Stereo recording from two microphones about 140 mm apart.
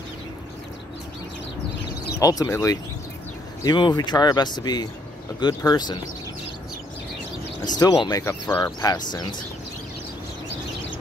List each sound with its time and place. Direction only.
2.1 s speech: 25° left (ahead or behind)
7.6 s speech: 30° left (ahead or behind)
8.9 s speech: 30° left (ahead or behind)